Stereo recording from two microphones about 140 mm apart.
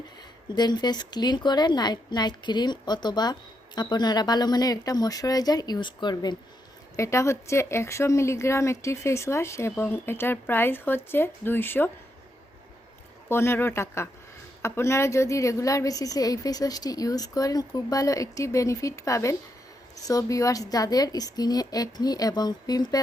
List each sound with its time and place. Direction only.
0.5 s a woman's voice: 30° left (ahead or behind)
6.9 s a woman's voice: 20° left (ahead or behind)
13.2 s a woman's voice: 15° left (ahead or behind)